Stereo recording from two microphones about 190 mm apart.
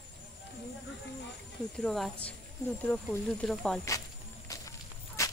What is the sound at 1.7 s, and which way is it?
Speech, centre (ahead or behind).